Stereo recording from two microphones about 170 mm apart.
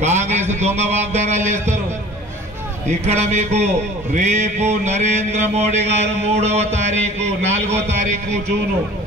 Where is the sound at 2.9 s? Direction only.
40° right (ahead or behind).